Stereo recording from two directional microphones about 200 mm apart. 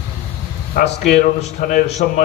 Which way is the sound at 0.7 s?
45° left (ahead or behind).